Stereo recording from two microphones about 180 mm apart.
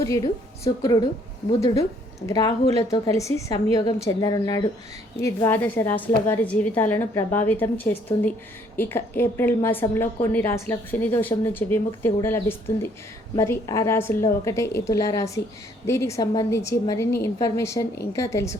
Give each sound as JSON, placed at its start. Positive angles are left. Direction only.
{"t": 0.0, "sound": "a woman's voice", "side_deg": 15}